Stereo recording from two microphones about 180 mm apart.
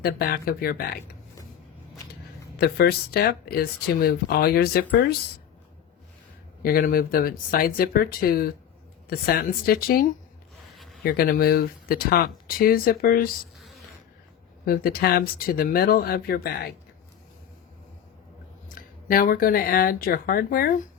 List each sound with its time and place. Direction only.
0.0 s speech: 60° left (ahead or behind)
2.6 s speech: 60° left (ahead or behind)
6.6 s speech: 55° left (ahead or behind)
14.6 s speech: 55° left (ahead or behind)
18.7 s speech: 50° left (ahead or behind)